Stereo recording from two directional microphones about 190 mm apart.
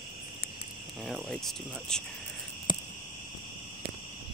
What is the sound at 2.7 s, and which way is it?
Cricket, 20° left (ahead or behind).